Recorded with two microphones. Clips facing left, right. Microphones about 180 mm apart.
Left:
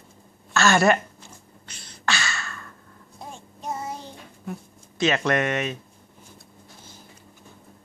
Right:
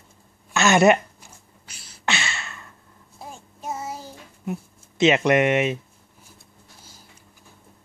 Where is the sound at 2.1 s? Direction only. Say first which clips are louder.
Even; 25° right (ahead or behind).